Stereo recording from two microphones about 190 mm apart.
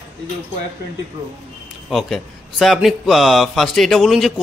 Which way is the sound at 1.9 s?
Centre (ahead or behind).